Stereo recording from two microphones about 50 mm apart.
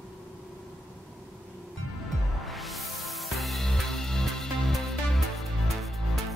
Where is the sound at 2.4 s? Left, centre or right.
Centre.